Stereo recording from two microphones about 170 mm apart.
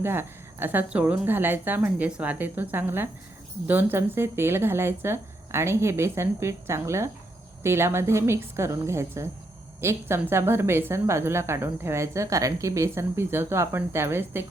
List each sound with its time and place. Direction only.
0.0 s a woman's voice: 15° right (ahead or behind)